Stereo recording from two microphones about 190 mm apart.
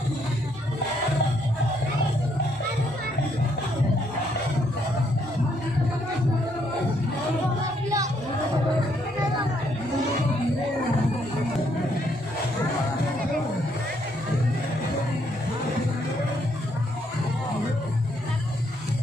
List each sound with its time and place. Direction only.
7.6 s music: 15° right (ahead or behind)